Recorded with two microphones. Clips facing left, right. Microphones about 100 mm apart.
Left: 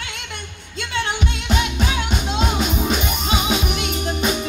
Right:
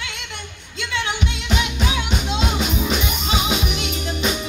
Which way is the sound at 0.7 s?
40° left (ahead or behind).